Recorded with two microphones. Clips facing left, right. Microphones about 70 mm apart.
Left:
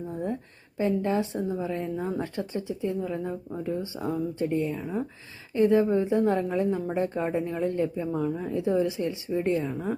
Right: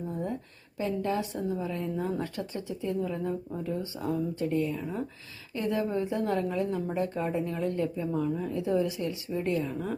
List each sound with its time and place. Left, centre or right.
0.1 s a sound: left
0.8 s speech: left
2.0 s speech: centre
4.8 s speech: centre
5.5 s speech: left